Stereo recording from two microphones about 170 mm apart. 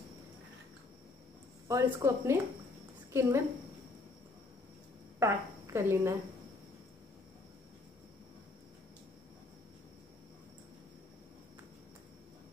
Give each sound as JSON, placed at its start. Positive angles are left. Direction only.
{"t": 1.7, "sound": "a woman's voice", "side_deg": -20}
{"t": 5.2, "sound": "a woman's voice", "side_deg": -15}